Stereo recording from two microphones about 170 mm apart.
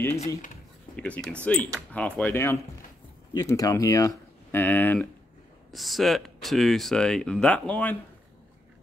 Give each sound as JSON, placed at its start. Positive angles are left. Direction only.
{"t": 0.9, "sound": "speech", "side_deg": 5}